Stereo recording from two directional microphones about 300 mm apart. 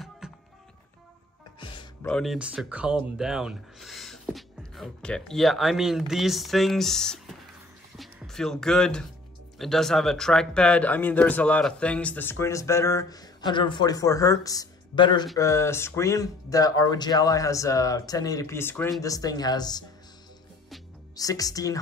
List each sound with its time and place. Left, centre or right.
0.2 s music: centre
1.6 s music: centre
2.0 s speech: centre
21.2 s speech: centre